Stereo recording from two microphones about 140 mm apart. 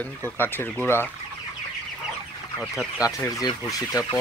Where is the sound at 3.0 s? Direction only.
25° left (ahead or behind).